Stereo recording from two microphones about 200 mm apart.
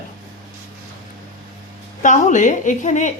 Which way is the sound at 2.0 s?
40° left (ahead or behind).